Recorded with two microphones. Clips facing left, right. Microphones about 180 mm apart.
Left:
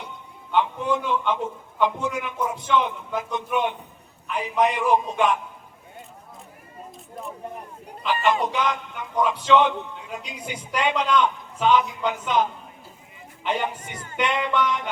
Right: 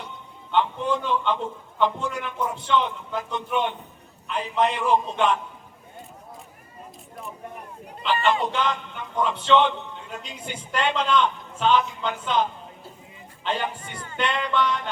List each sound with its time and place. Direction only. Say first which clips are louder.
0.5 s a man's voice: left 1 dB; 15° left (ahead or behind)
8.0 s a man's voice: even; 10° left (ahead or behind)